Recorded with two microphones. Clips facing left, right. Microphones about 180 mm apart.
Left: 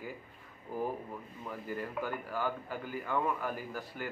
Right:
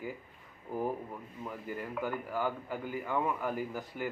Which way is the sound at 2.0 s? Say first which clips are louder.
Right 4 dB; 15° right (ahead or behind).